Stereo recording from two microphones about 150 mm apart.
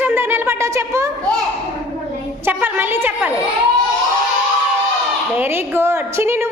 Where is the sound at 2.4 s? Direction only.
15° right (ahead or behind).